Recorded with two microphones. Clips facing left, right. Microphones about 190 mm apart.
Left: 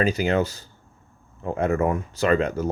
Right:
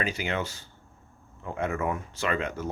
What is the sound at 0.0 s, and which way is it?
Speech, 40° left (ahead or behind).